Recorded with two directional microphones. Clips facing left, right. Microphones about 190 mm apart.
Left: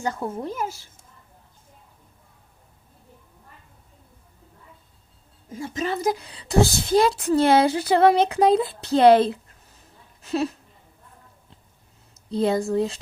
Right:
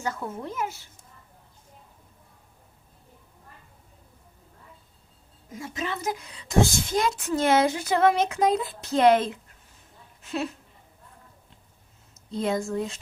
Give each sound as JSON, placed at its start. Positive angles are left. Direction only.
{"t": 0.0, "sound": "a woman's voice", "side_deg": 30}
{"t": 5.5, "sound": "a woman's voice", "side_deg": 30}
{"t": 12.3, "sound": "a woman's voice", "side_deg": 35}